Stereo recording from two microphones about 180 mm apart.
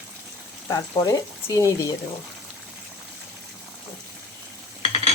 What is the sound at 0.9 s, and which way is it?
Speech, 20° left (ahead or behind).